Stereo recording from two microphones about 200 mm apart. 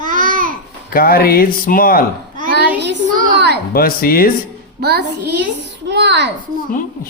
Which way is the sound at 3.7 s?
45° left (ahead or behind).